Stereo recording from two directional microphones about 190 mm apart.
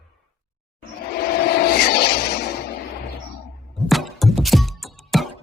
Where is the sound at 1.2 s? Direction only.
55° left (ahead or behind).